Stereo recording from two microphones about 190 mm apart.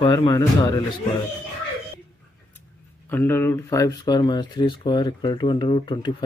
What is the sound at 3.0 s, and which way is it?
Speech, 10° left (ahead or behind).